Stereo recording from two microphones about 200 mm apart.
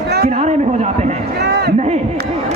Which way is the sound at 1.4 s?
55° right (ahead or behind).